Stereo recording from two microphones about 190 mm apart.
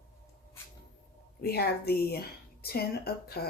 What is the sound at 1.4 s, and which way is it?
Speech, 55° left (ahead or behind).